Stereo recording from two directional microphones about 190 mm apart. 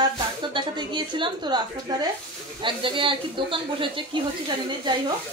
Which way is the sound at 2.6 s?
25° right (ahead or behind).